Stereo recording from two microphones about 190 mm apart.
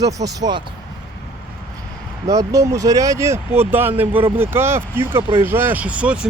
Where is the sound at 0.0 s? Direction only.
20° right (ahead or behind).